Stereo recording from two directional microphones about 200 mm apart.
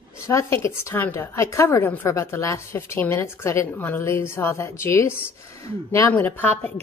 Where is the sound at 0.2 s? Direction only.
15° left (ahead or behind).